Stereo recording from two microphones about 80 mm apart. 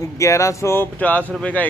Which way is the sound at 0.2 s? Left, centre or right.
Left.